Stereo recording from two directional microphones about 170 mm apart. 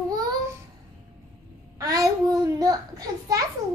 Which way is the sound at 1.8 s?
20° right (ahead or behind).